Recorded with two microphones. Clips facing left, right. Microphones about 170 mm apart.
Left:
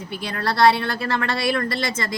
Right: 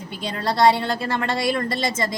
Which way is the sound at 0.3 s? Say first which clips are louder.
Even; 20° right (ahead or behind).